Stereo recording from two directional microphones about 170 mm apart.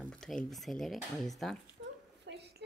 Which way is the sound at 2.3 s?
90° right.